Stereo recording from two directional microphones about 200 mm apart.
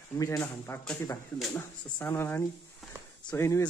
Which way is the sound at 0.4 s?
5° left (ahead or behind).